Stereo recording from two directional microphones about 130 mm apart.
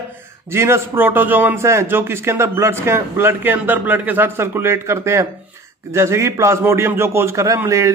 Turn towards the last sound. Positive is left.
turn(degrees=-25)  # may be behind; listen again after turning